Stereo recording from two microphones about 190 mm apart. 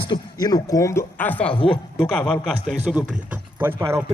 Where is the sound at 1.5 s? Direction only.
25° left (ahead or behind).